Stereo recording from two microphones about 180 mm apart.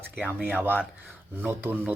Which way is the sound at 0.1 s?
10° right (ahead or behind).